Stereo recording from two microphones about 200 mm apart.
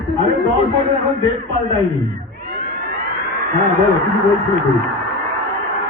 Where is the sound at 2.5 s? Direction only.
50° right (ahead or behind).